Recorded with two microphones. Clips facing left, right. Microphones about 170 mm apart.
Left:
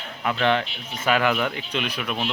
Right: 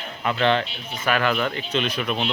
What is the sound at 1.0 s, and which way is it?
Speech, 15° left (ahead or behind).